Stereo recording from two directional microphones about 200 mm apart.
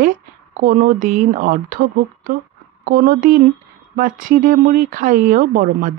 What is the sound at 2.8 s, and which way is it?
Speech, 45° right (ahead or behind).